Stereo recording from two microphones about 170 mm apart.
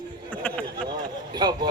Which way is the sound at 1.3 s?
25° right (ahead or behind).